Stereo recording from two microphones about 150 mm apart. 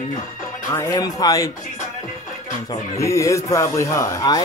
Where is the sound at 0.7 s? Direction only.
20° left (ahead or behind).